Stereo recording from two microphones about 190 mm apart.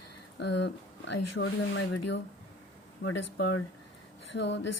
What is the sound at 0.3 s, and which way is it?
Speech, 65° left (ahead or behind).